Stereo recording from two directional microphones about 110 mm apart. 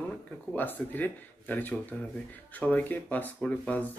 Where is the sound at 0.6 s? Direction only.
15° left (ahead or behind).